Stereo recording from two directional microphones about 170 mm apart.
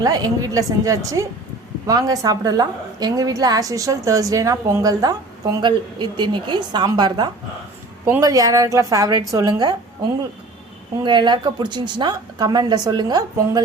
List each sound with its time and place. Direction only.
0.0 s a woman's voice: 20° right (ahead or behind)
11.0 s a woman's voice: 25° right (ahead or behind)